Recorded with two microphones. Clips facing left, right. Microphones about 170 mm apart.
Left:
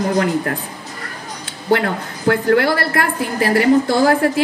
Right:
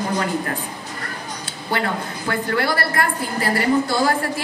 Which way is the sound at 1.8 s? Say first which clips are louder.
Left 6 dB; 55° left (ahead or behind).